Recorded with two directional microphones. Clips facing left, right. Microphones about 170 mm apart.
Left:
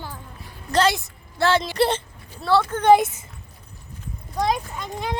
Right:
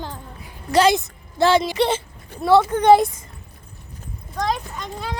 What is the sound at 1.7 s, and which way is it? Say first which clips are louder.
Speech: right 1 dB; centre (ahead or behind).